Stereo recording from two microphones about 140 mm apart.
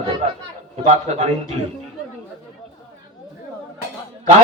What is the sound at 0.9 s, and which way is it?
Speech, 50° right (ahead or behind).